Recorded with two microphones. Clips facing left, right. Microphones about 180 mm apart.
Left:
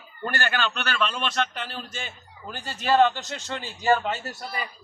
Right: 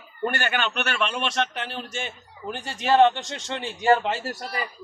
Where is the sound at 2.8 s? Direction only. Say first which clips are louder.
Right 2 dB; 25° right (ahead or behind).